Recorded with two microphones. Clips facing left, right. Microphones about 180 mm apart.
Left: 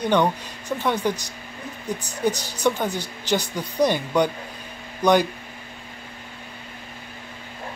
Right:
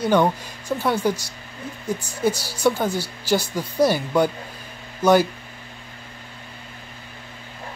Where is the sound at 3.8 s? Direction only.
5° right (ahead or behind).